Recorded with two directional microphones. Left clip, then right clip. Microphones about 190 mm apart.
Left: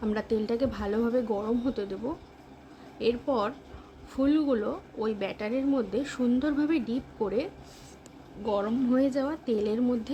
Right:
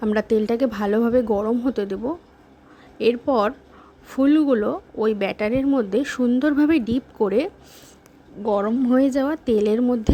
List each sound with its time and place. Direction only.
0.0 s speech: 35° right (ahead or behind)